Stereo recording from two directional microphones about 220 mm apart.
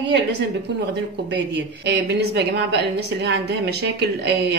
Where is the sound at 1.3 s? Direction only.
50° right (ahead or behind).